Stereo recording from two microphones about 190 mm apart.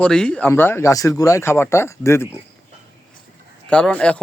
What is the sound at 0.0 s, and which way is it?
Speech, 5° left (ahead or behind).